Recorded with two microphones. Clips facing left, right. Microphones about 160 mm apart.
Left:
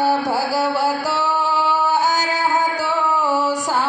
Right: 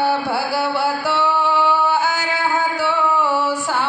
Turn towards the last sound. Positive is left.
turn(degrees=40)  # may be behind; listen again after turning